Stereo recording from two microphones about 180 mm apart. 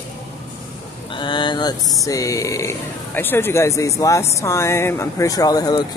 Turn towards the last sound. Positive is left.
turn(degrees=20)  # may be behind; listen again after turning